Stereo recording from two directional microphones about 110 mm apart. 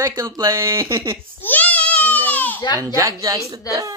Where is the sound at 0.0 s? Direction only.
30° right (ahead or behind).